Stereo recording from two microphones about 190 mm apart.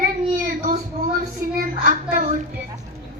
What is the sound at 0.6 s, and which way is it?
Speech, 40° right (ahead or behind).